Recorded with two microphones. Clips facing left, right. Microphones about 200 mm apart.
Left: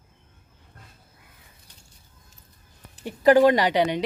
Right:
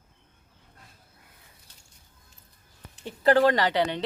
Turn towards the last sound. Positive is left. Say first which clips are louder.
# left 3 dB
turn(degrees=15)  # may be behind; listen again after turning